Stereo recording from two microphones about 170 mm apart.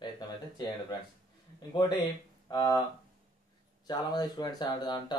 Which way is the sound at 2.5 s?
20° left (ahead or behind).